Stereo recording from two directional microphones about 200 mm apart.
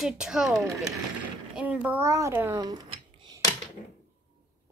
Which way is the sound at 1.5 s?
5° right (ahead or behind).